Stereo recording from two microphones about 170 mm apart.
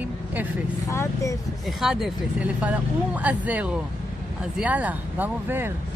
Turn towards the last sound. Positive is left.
turn(degrees=-10)  # may be behind; listen again after turning